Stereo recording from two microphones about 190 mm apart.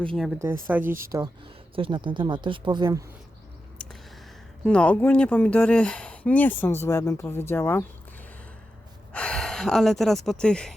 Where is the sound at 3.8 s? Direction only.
5° left (ahead or behind).